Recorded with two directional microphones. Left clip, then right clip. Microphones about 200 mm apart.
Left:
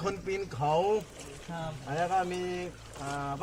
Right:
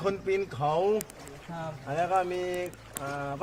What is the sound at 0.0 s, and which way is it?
Speech, 45° right (ahead or behind).